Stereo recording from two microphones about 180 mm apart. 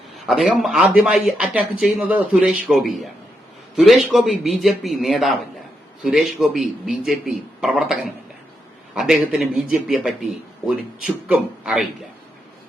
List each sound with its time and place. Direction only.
0.3 s speech: centre (ahead or behind)